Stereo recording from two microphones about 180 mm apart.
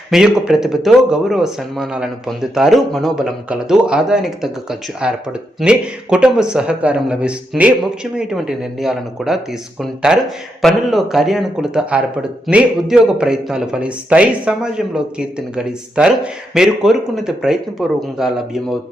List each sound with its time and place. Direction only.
0.1 s speech: 5° right (ahead or behind)